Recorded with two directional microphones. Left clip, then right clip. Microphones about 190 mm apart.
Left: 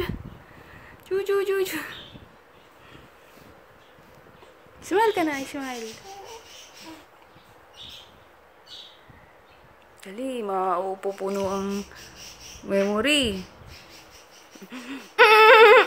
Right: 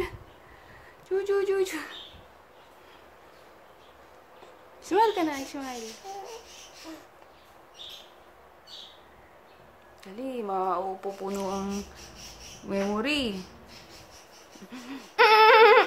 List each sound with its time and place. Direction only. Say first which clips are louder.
1.0 s speech: left 2 dB; 20° left (ahead or behind)
4.8 s speech: left 2 dB; 20° left (ahead or behind)
10.0 s speech: left 4 dB; 20° left (ahead or behind)
14.7 s a sound: left 4 dB; 15° left (ahead or behind)